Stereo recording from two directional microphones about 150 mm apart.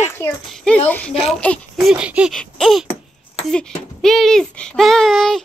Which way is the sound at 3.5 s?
5° left (ahead or behind).